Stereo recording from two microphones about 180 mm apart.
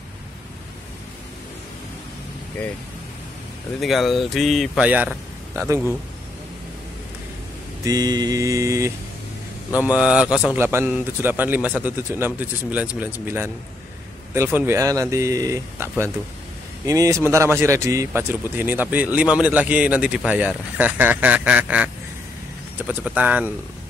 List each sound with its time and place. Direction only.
3.8 s a man's voice: centre (ahead or behind)
7.8 s mantra: 20° right (ahead or behind)
9.8 s a man's voice: 5° right (ahead or behind)